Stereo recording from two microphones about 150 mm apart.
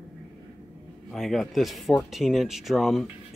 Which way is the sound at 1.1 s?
Centre (ahead or behind).